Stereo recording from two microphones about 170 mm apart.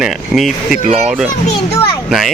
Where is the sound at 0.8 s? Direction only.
40° right (ahead or behind).